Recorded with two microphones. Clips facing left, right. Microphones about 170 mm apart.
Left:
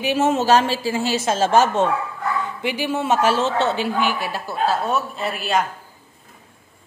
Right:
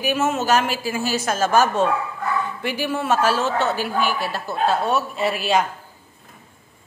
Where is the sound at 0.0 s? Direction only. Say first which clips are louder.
Left 3 dB; 25° left (ahead or behind); by 5.6 s centre (ahead or behind).